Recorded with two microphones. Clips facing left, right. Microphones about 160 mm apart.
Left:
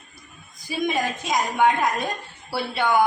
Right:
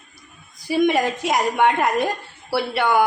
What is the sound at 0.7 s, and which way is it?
A woman's voice, 75° right (ahead or behind).